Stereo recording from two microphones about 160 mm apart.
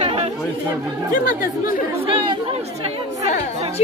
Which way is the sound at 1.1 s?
60° left (ahead or behind).